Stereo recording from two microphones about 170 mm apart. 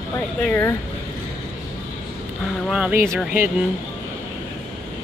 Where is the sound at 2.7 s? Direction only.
5° right (ahead or behind).